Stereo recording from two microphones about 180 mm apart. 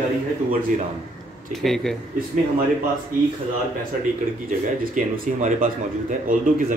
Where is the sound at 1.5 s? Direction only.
Centre (ahead or behind).